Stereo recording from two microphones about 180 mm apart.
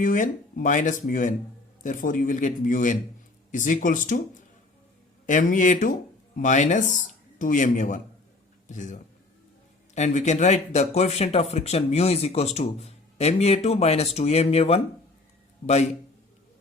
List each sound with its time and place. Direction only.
0.0 s speech: 45° left (ahead or behind)
5.2 s a man's voice: 45° left (ahead or behind)